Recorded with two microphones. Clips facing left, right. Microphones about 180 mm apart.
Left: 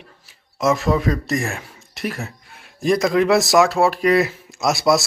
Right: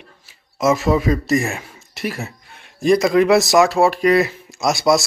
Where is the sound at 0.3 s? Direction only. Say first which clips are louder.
Right 2 dB; centre (ahead or behind).